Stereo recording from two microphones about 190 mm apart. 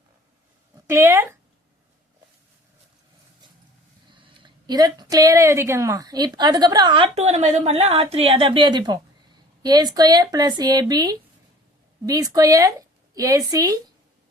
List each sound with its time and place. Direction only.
0.9 s a woman's voice: 15° right (ahead or behind)
4.1 s a woman's voice: 25° right (ahead or behind)